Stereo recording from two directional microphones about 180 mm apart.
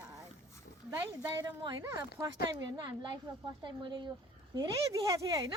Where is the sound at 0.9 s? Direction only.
20° right (ahead or behind).